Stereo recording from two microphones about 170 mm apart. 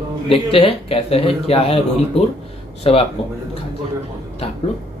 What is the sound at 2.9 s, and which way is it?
Speech, 35° left (ahead or behind).